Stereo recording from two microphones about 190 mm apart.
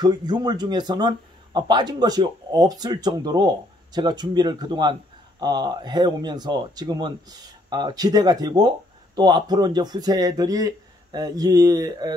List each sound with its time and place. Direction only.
0.0 s speech: 20° right (ahead or behind)